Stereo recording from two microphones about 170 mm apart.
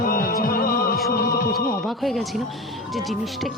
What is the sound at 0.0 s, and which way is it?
Music, 60° left (ahead or behind).